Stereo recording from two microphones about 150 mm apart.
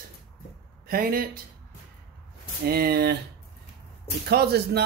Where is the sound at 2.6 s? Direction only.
90° right.